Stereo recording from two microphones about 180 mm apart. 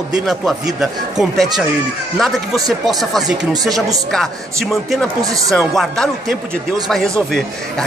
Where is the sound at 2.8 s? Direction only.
Centre (ahead or behind).